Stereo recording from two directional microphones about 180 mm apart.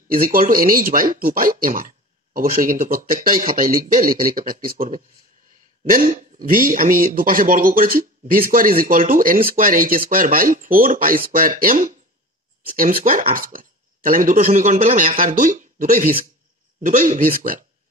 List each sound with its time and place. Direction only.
0.1 s speech: 55° right (ahead or behind)